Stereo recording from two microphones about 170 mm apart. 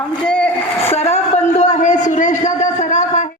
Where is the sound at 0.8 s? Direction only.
40° left (ahead or behind).